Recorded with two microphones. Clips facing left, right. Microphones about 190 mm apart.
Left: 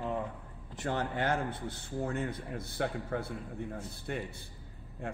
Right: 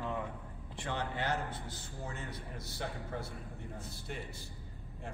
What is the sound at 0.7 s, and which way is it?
A man's voice, 45° left (ahead or behind).